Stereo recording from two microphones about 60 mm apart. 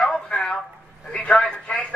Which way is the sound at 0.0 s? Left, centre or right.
Centre.